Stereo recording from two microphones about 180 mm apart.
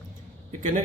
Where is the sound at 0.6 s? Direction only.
45° right (ahead or behind).